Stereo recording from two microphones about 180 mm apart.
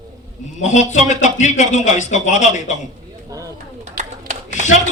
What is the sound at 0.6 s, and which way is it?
A man's voice, 40° left (ahead or behind).